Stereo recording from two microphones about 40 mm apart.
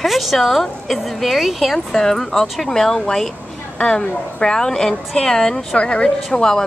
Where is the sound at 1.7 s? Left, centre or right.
Centre.